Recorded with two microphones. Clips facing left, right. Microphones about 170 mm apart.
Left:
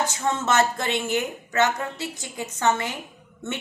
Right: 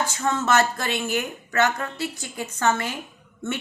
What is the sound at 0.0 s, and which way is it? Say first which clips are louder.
Speech: even; 20° left (ahead or behind).